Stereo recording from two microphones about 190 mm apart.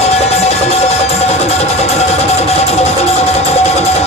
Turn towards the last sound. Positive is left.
turn(degrees=35)  # may be behind; listen again after turning